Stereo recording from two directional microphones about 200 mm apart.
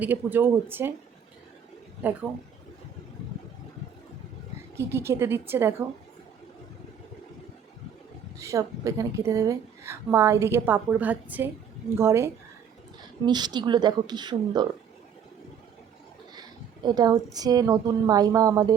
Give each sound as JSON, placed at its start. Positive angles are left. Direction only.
{"t": 0.0, "sound": "a woman's voice", "side_deg": -10}
{"t": 2.0, "sound": "a woman's voice", "side_deg": -10}
{"t": 4.9, "sound": "a woman's voice", "side_deg": -10}
{"t": 8.4, "sound": "a woman's voice", "side_deg": -15}
{"t": 16.3, "sound": "a sound", "side_deg": -20}
{"t": 17.3, "sound": "speech", "side_deg": -20}